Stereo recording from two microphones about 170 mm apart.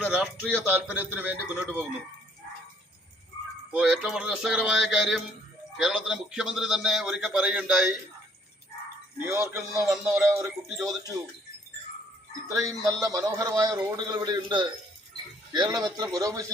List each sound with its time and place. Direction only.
0.0 s speech: 5° right (ahead or behind)
3.7 s a man's voice: centre (ahead or behind)
9.2 s speech: 15° right (ahead or behind)
9.8 s a man's voice: 5° right (ahead or behind)
10.2 s speech: 20° right (ahead or behind)
12.5 s a man's voice: 20° right (ahead or behind)